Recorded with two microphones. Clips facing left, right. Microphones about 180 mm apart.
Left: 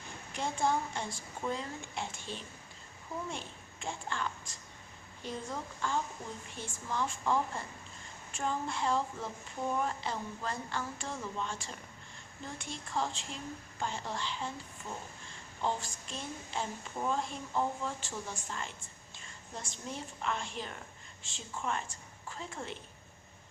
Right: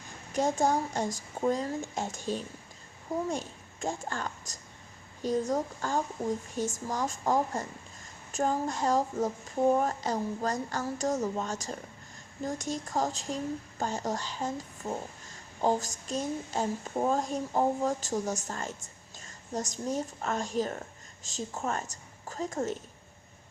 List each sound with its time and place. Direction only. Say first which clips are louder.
0.3 s a child's voice: right 6 dB; 40° right (ahead or behind)